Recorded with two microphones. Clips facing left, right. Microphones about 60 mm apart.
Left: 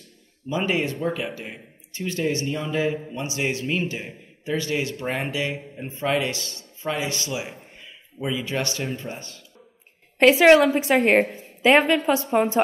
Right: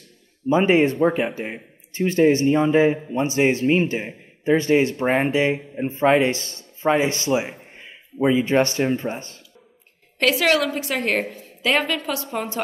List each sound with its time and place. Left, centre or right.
0.5 s speech: right
10.1 s a woman's voice: left